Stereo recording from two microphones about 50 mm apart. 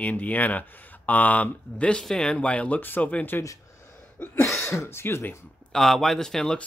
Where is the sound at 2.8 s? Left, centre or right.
Left.